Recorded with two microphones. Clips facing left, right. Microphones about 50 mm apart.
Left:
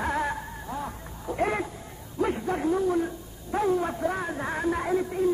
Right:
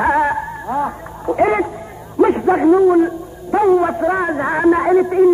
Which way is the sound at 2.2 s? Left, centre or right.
Right.